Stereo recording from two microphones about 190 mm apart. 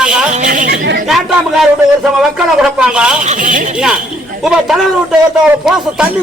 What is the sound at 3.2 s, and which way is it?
Speech, 45° right (ahead or behind).